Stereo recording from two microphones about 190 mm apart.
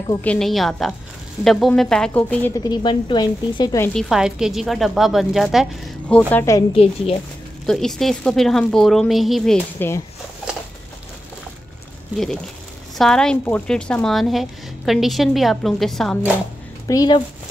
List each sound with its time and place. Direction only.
0.2 s speech: 5° left (ahead or behind)
2.5 s speech: 20° left (ahead or behind)
3.9 s speech: 5° right (ahead or behind)
6.7 s speech: 30° left (ahead or behind)
7.6 s speech: centre (ahead or behind)
9.8 s speech: 15° left (ahead or behind)
12.9 s speech: centre (ahead or behind)
16.8 s speech: 20° left (ahead or behind)